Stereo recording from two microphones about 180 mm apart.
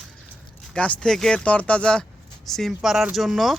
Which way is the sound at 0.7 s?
5° left (ahead or behind).